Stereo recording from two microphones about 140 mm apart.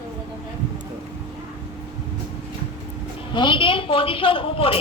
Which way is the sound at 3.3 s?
35° left (ahead or behind).